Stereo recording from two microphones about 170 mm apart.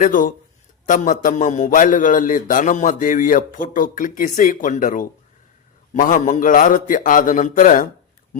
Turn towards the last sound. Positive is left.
turn(degrees=50)  # may be behind; listen again after turning